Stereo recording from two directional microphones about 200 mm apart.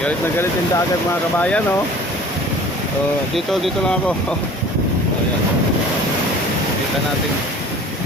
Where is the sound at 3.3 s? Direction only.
Centre (ahead or behind).